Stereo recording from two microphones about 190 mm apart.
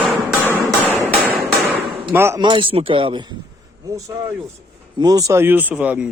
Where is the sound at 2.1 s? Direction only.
15° right (ahead or behind).